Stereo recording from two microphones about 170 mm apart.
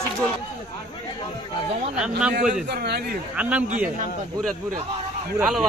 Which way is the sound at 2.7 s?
70° right (ahead or behind).